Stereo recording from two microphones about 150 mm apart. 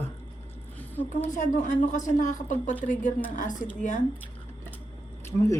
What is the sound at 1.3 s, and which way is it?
A woman's voice, 55° left (ahead or behind).